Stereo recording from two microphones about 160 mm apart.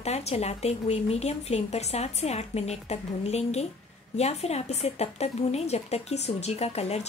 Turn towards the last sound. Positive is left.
turn(degrees=40)  # may be behind; listen again after turning